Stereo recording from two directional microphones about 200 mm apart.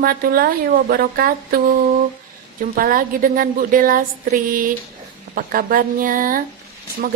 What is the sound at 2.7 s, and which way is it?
A woman's voice, 45° right (ahead or behind).